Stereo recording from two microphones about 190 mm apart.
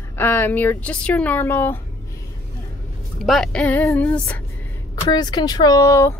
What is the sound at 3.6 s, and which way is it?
Speech, 15° left (ahead or behind).